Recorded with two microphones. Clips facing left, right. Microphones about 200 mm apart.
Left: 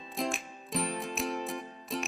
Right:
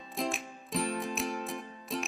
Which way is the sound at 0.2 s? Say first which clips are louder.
Even; centre (ahead or behind).